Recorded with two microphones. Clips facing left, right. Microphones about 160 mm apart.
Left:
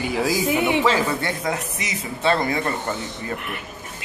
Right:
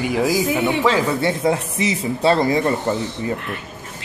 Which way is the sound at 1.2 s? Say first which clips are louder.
Right 7 dB; 30° right (ahead or behind).